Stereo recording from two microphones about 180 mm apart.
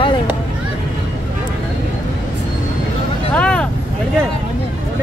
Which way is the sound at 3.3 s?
5° left (ahead or behind).